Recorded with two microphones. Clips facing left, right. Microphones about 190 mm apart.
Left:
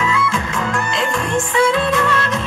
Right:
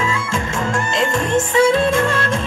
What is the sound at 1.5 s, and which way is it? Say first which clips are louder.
Music: right 2 dB; 45° right (ahead or behind).